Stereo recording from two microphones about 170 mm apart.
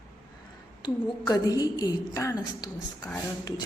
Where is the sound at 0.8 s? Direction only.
20° left (ahead or behind).